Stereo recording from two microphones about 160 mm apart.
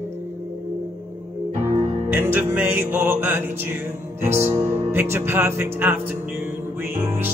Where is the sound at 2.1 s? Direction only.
15° right (ahead or behind).